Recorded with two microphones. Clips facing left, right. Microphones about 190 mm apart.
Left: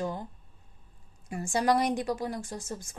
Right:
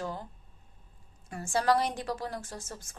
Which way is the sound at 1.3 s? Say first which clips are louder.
Left 1 dB; 15° left (ahead or behind).